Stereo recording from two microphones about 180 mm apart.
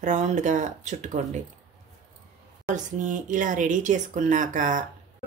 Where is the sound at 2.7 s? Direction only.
45° right (ahead or behind).